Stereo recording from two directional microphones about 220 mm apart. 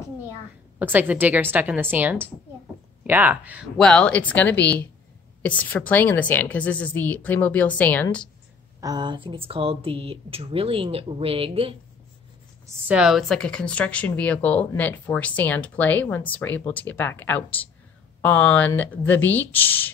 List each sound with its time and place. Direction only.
0.7 s a woman's voice: 10° right (ahead or behind)
8.8 s speech: 20° right (ahead or behind)
12.6 s speech: 5° right (ahead or behind); by 19.9 s 10° left (ahead or behind)